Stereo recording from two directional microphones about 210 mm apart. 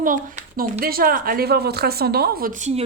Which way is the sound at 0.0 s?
40° right (ahead or behind).